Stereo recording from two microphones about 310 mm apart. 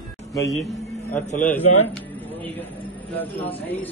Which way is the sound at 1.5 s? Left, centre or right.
Centre.